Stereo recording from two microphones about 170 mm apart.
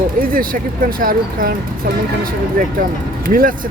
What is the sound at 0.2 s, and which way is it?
Speech, 55° right (ahead or behind).